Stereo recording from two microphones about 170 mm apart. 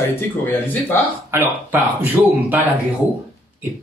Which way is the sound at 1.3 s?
10° right (ahead or behind).